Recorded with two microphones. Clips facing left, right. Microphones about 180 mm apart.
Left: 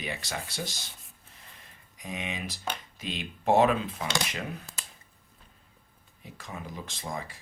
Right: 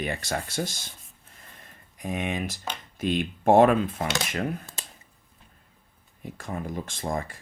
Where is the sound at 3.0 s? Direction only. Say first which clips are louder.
Right 10 dB; 50° right (ahead or behind).